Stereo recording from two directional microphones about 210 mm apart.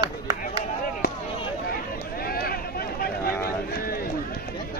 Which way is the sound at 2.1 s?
45° left (ahead or behind).